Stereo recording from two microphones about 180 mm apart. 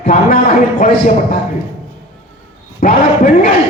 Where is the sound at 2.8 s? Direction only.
50° left (ahead or behind).